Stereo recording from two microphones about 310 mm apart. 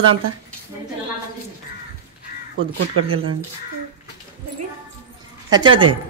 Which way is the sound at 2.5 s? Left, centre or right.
Right.